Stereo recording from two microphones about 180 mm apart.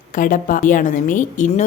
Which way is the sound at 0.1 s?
50° left (ahead or behind).